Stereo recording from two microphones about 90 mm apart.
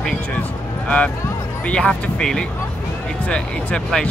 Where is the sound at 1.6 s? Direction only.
10° left (ahead or behind).